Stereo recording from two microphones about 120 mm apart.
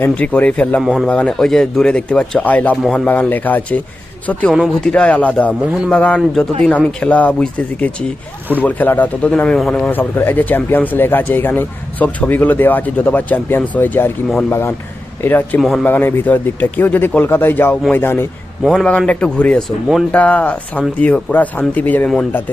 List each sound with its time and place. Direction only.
0.0 s speech: 15° left (ahead or behind)
0.8 s speech: 5° right (ahead or behind)
1.0 s speech: 10° left (ahead or behind)
3.1 s speech: 15° left (ahead or behind)
15.2 s speech: 15° left (ahead or behind)
18.6 s speech: 5° left (ahead or behind)